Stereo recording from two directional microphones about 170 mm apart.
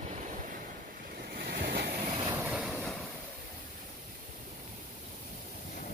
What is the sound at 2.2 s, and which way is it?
Train, 10° right (ahead or behind).